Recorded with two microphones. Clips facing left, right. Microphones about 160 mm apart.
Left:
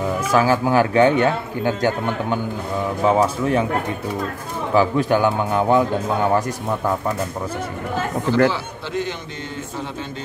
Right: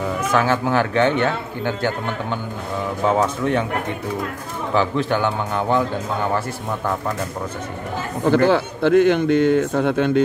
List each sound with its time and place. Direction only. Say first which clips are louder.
0.3 s a man's voice: left 2 dB; 10° left (ahead or behind)
4.7 s a man's voice: left 3 dB; 10° left (ahead or behind)
8.3 s a man's voice: right 3 dB; 60° right (ahead or behind)